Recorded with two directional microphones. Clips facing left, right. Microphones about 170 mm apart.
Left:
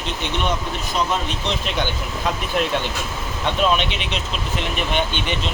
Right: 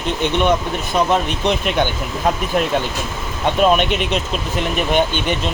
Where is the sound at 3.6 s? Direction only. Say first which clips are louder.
Right 6 dB; 50° right (ahead or behind).